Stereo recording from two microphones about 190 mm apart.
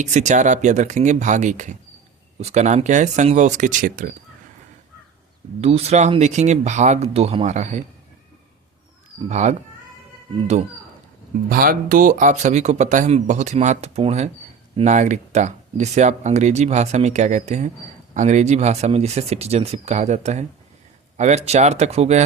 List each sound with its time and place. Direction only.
0.0 s speech: 40° right (ahead or behind)
5.5 s speech: 35° right (ahead or behind)
9.3 s speech: 40° right (ahead or behind)
11.4 s speech: 50° right (ahead or behind); by 22.2 s 35° right (ahead or behind)